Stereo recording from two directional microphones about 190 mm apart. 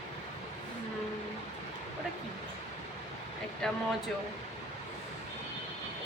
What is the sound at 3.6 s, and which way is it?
Speech, 5° left (ahead or behind).